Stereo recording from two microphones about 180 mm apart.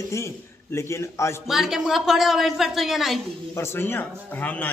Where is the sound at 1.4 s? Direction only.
Centre (ahead or behind).